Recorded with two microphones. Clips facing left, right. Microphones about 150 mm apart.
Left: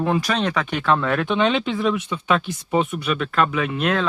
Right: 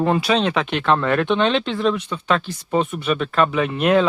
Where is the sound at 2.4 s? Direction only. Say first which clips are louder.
Even; 15° left (ahead or behind).